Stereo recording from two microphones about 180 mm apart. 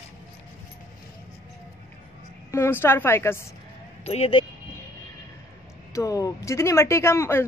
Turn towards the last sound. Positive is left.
turn(degrees=15)  # may be behind; listen again after turning